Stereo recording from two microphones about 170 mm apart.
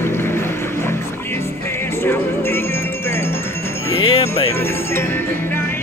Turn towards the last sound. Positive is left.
turn(degrees=15)  # may be behind; listen again after turning